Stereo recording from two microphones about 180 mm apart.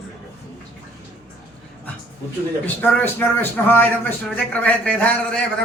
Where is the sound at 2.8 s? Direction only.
10° left (ahead or behind).